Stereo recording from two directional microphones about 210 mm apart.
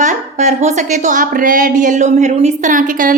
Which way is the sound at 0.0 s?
35° right (ahead or behind).